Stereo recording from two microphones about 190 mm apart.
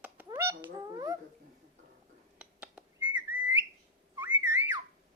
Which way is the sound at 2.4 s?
5° right (ahead or behind).